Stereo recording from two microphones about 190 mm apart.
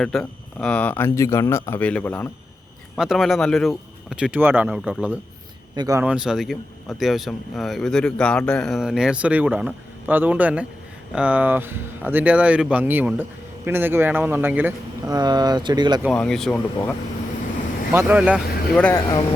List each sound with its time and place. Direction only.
0.0 s speech: 5° left (ahead or behind)
2.9 s speech: centre (ahead or behind)
5.7 s speech: 20° right (ahead or behind)
6.0 s speech: 5° right (ahead or behind)
15.1 s speech: 20° right (ahead or behind)
16.0 s speech: 5° left (ahead or behind)
17.9 s speech: 5° right (ahead or behind)
18.8 s speech: 10° left (ahead or behind)